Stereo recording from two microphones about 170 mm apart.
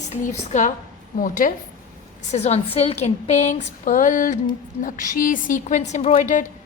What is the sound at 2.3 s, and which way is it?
A woman's voice, 40° left (ahead or behind).